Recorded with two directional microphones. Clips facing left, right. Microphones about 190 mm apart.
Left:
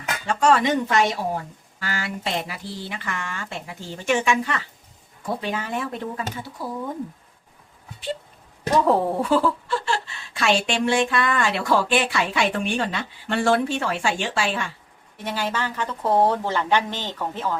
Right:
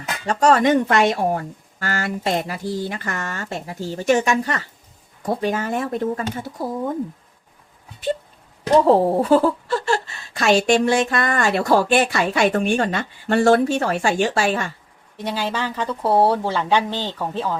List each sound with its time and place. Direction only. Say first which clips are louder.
0.3 s a woman's voice: right 4 dB; 40° right (ahead or behind)
8.9 s a woman's voice: right 5 dB; 35° right (ahead or behind)
15.2 s a woman's voice: right 2 dB; 10° right (ahead or behind)